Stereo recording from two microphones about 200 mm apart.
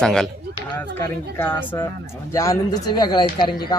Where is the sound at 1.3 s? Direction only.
10° left (ahead or behind).